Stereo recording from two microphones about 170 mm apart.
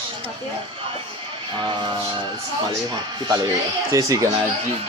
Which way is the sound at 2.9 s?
25° right (ahead or behind).